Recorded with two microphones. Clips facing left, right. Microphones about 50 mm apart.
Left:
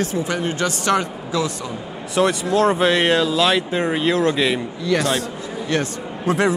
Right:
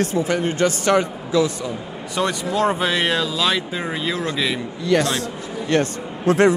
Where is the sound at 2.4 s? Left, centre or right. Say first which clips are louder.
Left 3 dB; centre.